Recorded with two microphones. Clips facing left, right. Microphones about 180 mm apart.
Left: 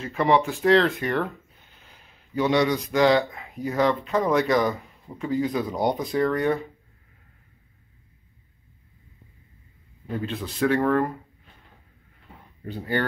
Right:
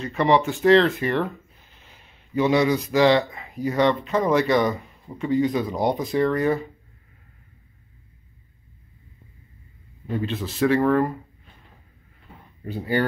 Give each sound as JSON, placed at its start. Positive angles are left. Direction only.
{"t": 0.0, "sound": "speech", "side_deg": 0}
{"t": 10.0, "sound": "speech", "side_deg": 0}
{"t": 12.6, "sound": "speech", "side_deg": -10}